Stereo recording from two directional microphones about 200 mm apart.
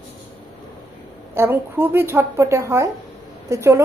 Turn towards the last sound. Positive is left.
turn(degrees=-15)  # may be behind; listen again after turning